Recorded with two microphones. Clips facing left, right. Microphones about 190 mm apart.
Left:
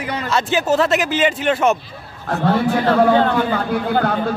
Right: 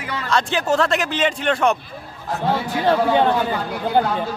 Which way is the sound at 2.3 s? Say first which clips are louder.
Left 5 dB; 60° left (ahead or behind).